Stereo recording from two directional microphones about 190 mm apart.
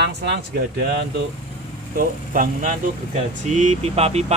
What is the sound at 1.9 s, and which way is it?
Speech, 45° right (ahead or behind).